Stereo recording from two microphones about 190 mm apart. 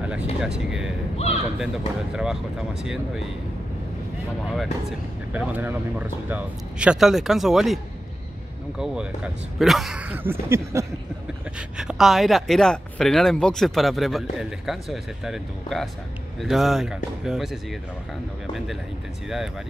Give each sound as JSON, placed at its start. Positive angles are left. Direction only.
{"t": 0.0, "sound": "speech", "side_deg": -5}
{"t": 1.1, "sound": "speech", "side_deg": 35}
{"t": 4.5, "sound": "speech", "side_deg": 0}
{"t": 11.7, "sound": "speech", "side_deg": -5}
{"t": 19.2, "sound": "speech", "side_deg": 0}